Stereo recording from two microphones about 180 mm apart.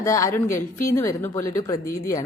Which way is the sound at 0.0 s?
15° left (ahead or behind).